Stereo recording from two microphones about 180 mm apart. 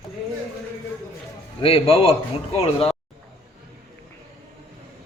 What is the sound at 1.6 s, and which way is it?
A man's voice, 30° left (ahead or behind).